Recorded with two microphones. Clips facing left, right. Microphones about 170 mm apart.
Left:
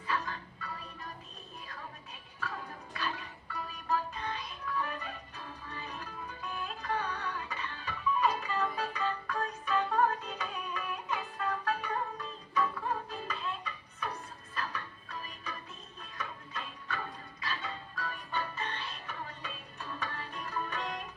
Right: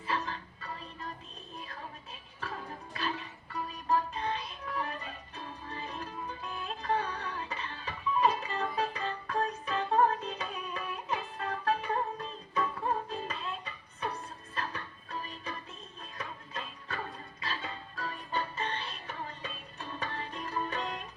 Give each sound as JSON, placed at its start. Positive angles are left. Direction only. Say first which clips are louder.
{"t": 0.1, "sound": "music", "louder": "right 1 dB", "side_deg": -30}
{"t": 3.5, "sound": "music", "louder": "right 3 dB", "side_deg": -30}